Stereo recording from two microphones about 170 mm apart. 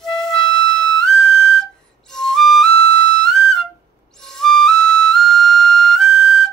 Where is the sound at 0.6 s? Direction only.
Centre (ahead or behind).